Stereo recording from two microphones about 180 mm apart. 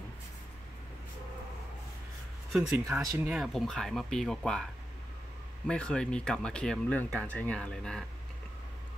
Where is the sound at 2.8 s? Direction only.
20° right (ahead or behind).